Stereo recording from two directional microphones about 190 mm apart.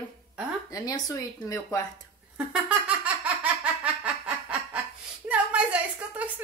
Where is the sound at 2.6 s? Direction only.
5° right (ahead or behind).